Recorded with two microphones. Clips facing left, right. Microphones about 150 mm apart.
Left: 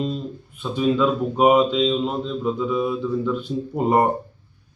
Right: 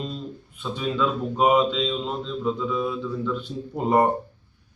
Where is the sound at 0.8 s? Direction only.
15° left (ahead or behind).